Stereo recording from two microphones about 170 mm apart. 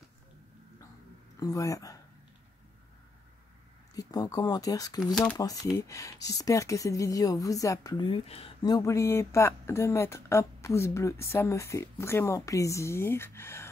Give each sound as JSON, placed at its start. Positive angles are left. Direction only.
{"t": 1.4, "sound": "a woman's voice", "side_deg": 20}
{"t": 3.9, "sound": "a woman's voice", "side_deg": 20}
{"t": 8.6, "sound": "speech", "side_deg": 20}